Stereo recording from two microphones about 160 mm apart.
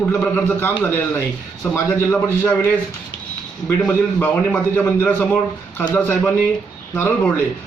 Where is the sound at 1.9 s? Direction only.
15° left (ahead or behind).